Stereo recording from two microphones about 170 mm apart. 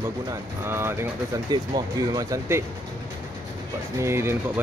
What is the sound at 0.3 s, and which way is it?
Speech, 15° right (ahead or behind).